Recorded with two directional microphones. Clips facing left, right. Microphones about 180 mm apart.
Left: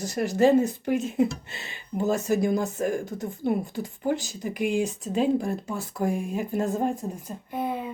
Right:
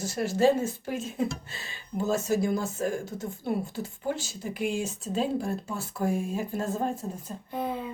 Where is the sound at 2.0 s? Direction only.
15° left (ahead or behind).